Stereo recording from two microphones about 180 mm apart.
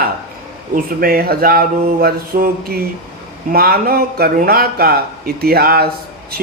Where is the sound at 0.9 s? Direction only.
55° right (ahead or behind).